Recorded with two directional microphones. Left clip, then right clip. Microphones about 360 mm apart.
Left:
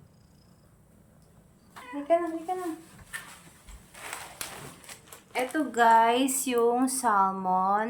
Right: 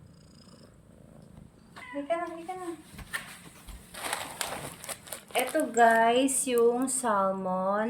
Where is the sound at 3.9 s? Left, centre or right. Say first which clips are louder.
Right 6 dB; centre.